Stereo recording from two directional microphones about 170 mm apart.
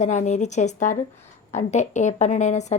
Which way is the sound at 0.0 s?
45° left (ahead or behind).